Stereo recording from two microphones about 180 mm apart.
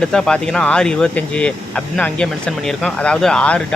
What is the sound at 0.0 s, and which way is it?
Speech, 5° left (ahead or behind).